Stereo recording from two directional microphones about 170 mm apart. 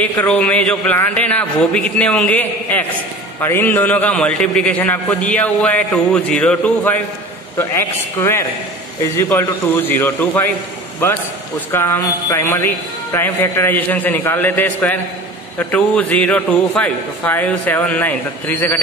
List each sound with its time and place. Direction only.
0.0 s a man's voice: 5° left (ahead or behind)
11.7 s a man's voice: 15° left (ahead or behind)